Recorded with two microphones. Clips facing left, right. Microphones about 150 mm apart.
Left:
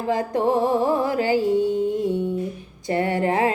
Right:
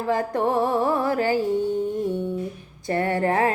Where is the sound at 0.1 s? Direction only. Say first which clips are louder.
Left 2 dB; 15° left (ahead or behind).